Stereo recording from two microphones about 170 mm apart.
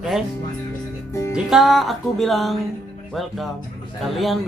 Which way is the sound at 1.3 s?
Centre (ahead or behind).